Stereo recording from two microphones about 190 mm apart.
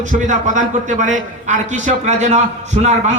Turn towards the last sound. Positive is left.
turn(degrees=-35)  # may be behind; listen again after turning